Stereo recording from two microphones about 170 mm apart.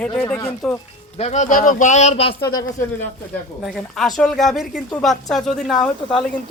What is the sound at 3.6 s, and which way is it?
A woman's voice, centre (ahead or behind).